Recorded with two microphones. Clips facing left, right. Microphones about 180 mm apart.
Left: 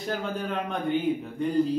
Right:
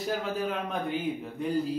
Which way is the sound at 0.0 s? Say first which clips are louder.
Even; centre (ahead or behind).